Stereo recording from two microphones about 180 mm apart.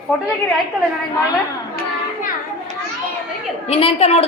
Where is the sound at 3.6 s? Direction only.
35° left (ahead or behind).